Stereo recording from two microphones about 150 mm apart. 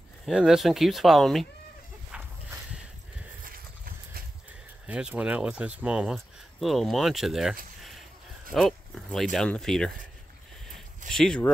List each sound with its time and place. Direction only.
0.2 s speech: 5° right (ahead or behind)
2.1 s walk: 5° right (ahead or behind)
3.4 s a sound: 75° right (ahead or behind)
4.5 s speech: 10° right (ahead or behind)
8.5 s speech: centre (ahead or behind)
11.1 s speech: 5° left (ahead or behind)